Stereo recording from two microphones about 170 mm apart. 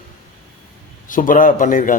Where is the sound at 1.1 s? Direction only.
50° left (ahead or behind).